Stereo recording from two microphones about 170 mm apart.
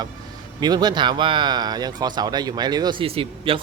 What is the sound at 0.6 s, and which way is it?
Speech, 25° right (ahead or behind).